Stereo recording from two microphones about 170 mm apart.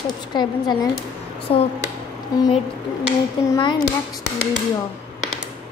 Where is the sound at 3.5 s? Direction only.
25° left (ahead or behind).